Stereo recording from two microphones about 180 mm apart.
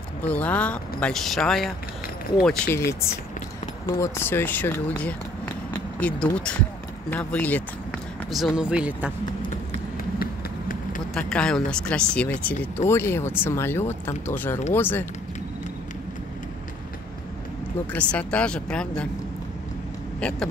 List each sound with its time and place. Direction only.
0.2 s speech: 10° left (ahead or behind)
7.1 s run: 10° left (ahead or behind)
8.5 s speech: 5° right (ahead or behind)
10.1 s run: 50° left (ahead or behind)
11.1 s speech: 5° left (ahead or behind)
17.9 s speech: 5° left (ahead or behind)
20.2 s speech: 5° left (ahead or behind)